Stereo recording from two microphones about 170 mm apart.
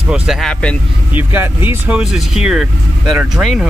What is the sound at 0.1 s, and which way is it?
Speech, centre (ahead or behind).